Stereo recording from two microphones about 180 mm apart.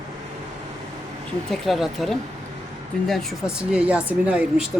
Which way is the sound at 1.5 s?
Centre (ahead or behind).